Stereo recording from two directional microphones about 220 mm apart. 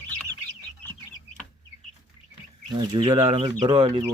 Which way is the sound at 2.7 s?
20° right (ahead or behind).